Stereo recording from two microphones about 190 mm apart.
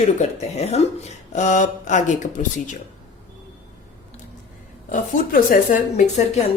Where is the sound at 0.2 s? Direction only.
35° left (ahead or behind).